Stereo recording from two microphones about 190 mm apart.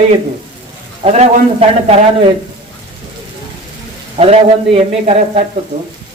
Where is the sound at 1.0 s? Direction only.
35° right (ahead or behind).